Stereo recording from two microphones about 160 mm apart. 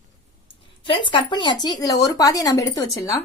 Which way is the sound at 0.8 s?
30° left (ahead or behind).